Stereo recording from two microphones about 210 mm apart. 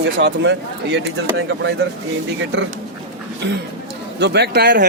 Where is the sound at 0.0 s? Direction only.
55° right (ahead or behind).